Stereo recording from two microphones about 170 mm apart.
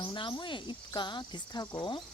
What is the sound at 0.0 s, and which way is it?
Speech, 30° left (ahead or behind).